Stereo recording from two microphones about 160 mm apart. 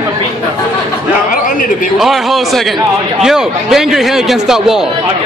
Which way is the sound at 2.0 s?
Centre (ahead or behind).